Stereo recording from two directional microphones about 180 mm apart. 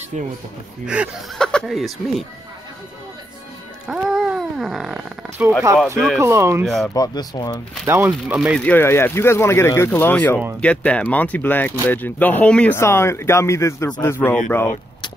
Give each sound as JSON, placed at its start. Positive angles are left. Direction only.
{"t": 0.8, "sound": "speech", "side_deg": -5}
{"t": 3.8, "sound": "speech", "side_deg": -5}
{"t": 6.1, "sound": "speech", "side_deg": -15}
{"t": 6.6, "sound": "speech", "side_deg": 0}
{"t": 6.9, "sound": "speech", "side_deg": 20}
{"t": 7.8, "sound": "speech", "side_deg": -15}
{"t": 8.6, "sound": "speech", "side_deg": 10}